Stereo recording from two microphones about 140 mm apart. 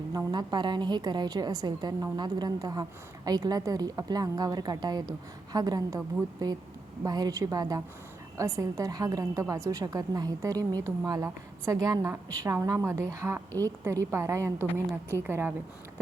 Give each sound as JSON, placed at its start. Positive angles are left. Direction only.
{"t": 0.1, "sound": "a woman's voice", "side_deg": -30}